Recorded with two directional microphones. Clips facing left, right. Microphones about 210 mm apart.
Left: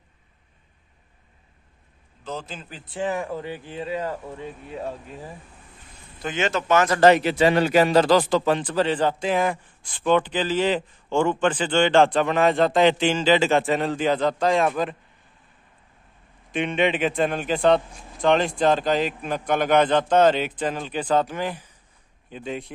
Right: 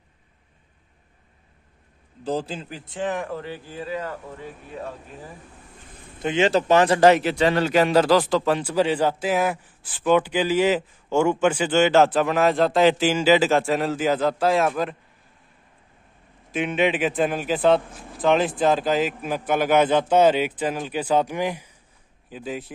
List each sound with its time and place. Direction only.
2.2 s a man's voice: 35° right (ahead or behind)
2.9 s speech: 10° left (ahead or behind); by 4.9 s 25° left (ahead or behind)
6.2 s a man's voice: 30° right (ahead or behind)
7.0 s a man's voice: 5° right (ahead or behind)
7.4 s a man's voice: 10° left (ahead or behind)
16.5 s a man's voice: 5° right (ahead or behind)